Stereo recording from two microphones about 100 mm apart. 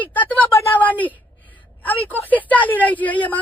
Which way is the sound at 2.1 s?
15° left (ahead or behind).